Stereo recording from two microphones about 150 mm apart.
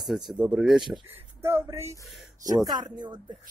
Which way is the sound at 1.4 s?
15° right (ahead or behind).